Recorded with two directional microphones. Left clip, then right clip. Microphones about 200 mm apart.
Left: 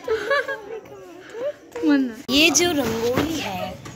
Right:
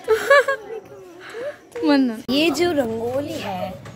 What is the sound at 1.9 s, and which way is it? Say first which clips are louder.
Speech: right 2 dB; 55° right (ahead or behind).